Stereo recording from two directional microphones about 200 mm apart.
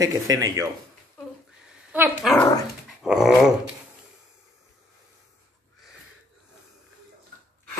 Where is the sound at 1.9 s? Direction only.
10° right (ahead or behind).